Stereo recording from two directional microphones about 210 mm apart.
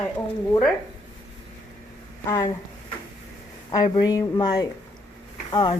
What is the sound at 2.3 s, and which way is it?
Speech, 15° left (ahead or behind).